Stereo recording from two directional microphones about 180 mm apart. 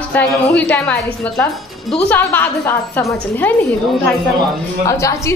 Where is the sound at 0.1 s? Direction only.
10° left (ahead or behind).